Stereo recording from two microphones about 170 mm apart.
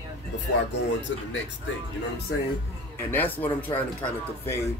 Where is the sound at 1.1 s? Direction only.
90° left.